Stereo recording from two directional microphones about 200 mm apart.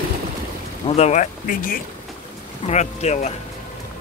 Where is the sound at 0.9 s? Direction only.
35° left (ahead or behind).